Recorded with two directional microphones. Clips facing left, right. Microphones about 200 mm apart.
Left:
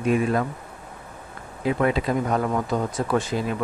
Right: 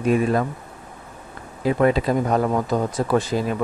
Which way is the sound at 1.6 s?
40° right (ahead or behind).